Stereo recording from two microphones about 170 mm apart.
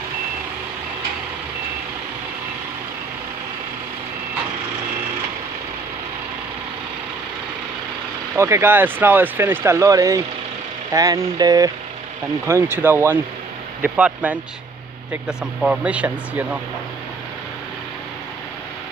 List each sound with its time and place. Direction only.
8.4 s speech: 15° right (ahead or behind)